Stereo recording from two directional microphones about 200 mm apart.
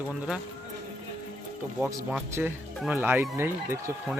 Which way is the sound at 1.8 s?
10° right (ahead or behind).